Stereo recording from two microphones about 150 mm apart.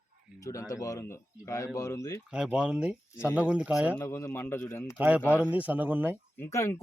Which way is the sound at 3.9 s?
20° left (ahead or behind).